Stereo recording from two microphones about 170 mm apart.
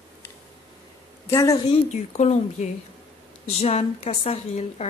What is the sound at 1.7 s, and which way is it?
Speech, 40° left (ahead or behind).